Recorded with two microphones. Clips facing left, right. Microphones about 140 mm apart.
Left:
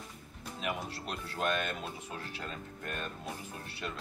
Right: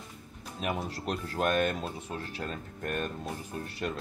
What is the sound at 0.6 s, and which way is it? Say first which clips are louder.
Speech: right 4 dB; 40° right (ahead or behind).